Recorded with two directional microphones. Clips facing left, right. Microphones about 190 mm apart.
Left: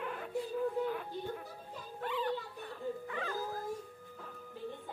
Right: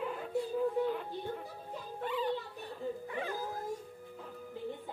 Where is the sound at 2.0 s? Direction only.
5° right (ahead or behind).